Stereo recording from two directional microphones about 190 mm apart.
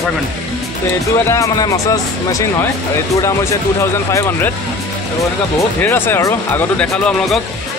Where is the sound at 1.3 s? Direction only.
15° left (ahead or behind).